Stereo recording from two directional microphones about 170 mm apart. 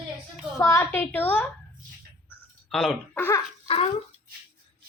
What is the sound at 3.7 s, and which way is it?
Speech, 35° left (ahead or behind).